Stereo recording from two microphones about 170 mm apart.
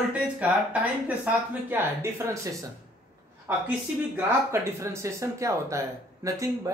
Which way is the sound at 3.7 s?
15° right (ahead or behind).